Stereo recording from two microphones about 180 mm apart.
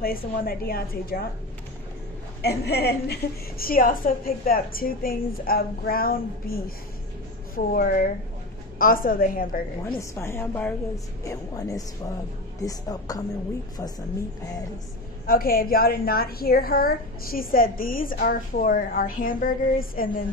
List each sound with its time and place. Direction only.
0.0 s a woman's voice: 55° left (ahead or behind)
2.4 s a woman's voice: 65° left (ahead or behind)
9.8 s a woman's voice: 15° left (ahead or behind)
15.2 s a woman's voice: 55° left (ahead or behind)